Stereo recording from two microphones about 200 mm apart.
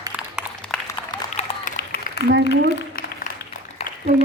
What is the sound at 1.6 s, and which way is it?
Applause, 50° left (ahead or behind).